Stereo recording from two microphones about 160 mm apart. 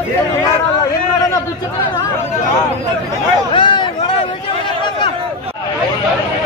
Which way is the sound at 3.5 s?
30° left (ahead or behind).